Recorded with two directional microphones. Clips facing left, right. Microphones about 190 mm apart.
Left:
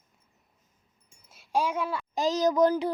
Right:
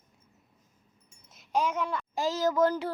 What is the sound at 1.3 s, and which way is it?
A child's voice, 10° left (ahead or behind).